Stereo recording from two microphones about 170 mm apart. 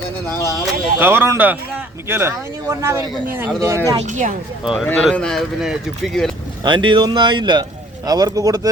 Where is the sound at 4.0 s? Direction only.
45° right (ahead or behind).